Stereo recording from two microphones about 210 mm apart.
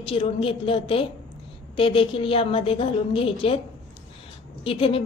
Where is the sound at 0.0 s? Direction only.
25° left (ahead or behind).